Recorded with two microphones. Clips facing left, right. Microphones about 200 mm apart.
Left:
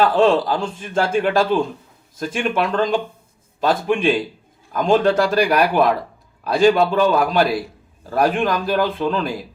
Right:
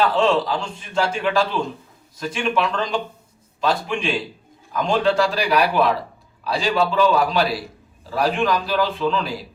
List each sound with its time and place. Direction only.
0.1 s a man's voice: 50° left (ahead or behind)